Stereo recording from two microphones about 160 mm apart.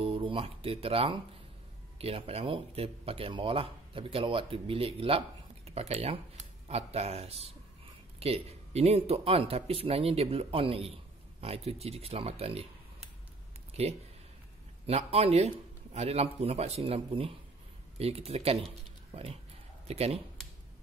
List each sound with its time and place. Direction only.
0.0 s speech: 35° right (ahead or behind)
13.8 s speech: 40° right (ahead or behind)